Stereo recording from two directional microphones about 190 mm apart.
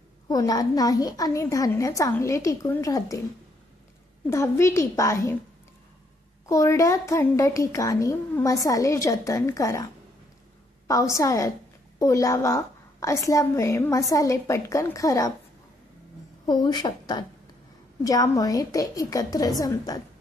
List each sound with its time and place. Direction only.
0.3 s a woman's voice: 20° left (ahead or behind)
4.3 s a woman's voice: 15° left (ahead or behind)
6.4 s a woman's voice: 15° left (ahead or behind)
10.9 s a woman's voice: 15° left (ahead or behind)
16.4 s a woman's voice: 25° left (ahead or behind)